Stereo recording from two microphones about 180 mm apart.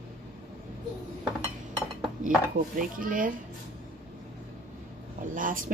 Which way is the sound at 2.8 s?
50° right (ahead or behind).